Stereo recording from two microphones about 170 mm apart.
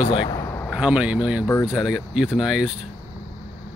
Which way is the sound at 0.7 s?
5° right (ahead or behind).